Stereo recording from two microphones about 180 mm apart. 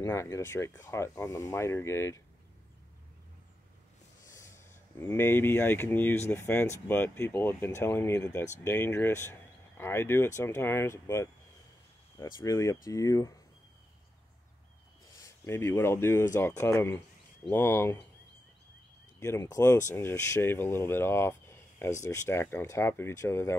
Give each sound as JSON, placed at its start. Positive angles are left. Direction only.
{"t": 0.0, "sound": "speech", "side_deg": 15}
{"t": 4.3, "sound": "speech", "side_deg": 15}
{"t": 15.2, "sound": "speech", "side_deg": 15}
{"t": 19.1, "sound": "speech", "side_deg": 15}